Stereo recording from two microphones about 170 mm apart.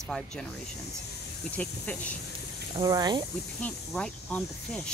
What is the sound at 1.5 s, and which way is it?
Speech, 10° left (ahead or behind).